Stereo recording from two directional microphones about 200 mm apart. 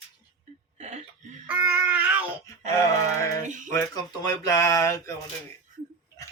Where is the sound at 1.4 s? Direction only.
10° right (ahead or behind).